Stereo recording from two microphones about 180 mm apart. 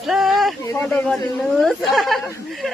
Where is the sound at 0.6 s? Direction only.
15° left (ahead or behind).